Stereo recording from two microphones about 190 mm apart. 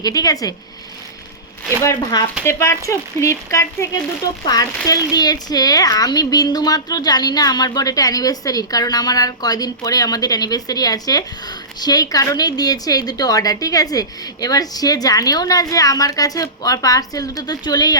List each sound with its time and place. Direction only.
0.0 s speech: 20° left (ahead or behind)
1.8 s speech: 20° left (ahead or behind)